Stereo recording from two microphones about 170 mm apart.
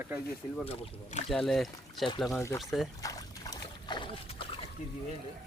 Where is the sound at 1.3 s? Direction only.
Centre (ahead or behind).